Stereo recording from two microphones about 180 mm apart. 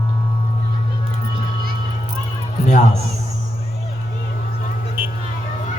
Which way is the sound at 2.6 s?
40° left (ahead or behind).